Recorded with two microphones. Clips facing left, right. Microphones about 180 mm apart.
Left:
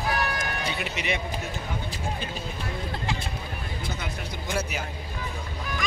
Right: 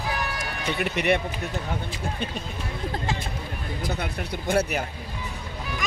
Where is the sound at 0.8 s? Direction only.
60° right (ahead or behind).